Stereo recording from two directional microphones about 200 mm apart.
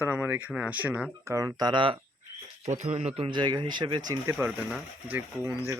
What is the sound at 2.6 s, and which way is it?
Speech, 35° right (ahead or behind).